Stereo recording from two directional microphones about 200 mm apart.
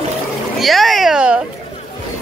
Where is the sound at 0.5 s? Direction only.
Centre (ahead or behind).